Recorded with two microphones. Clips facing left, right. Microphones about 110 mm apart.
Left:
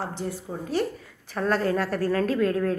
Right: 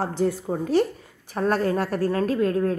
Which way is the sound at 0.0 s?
40° right (ahead or behind).